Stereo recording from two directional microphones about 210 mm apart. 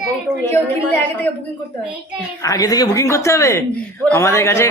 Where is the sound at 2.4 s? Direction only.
15° left (ahead or behind).